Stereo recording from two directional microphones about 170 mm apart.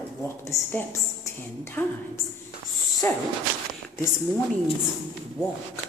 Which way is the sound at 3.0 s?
10° left (ahead or behind).